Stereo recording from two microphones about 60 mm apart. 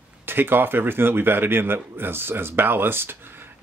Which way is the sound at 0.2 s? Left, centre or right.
Right.